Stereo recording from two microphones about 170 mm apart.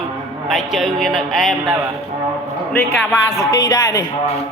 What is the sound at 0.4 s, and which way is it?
Speech, centre (ahead or behind).